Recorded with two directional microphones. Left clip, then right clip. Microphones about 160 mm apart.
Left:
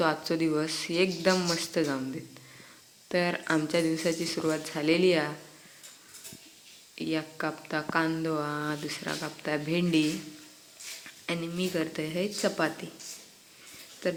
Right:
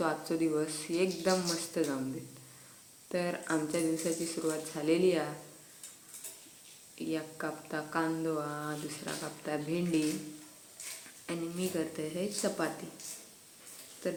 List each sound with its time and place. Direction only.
0.0 s speech: 40° left (ahead or behind)
3.1 s speech: 40° left (ahead or behind)
7.0 s speech: 35° left (ahead or behind)
11.3 s speech: 30° left (ahead or behind)